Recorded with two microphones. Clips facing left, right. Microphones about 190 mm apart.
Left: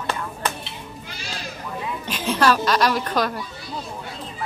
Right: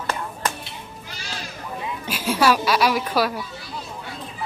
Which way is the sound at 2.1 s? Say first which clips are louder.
Even; 10° right (ahead or behind).